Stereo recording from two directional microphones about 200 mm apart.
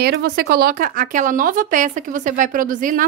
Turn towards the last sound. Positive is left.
turn(degrees=-40)  # may be behind; listen again after turning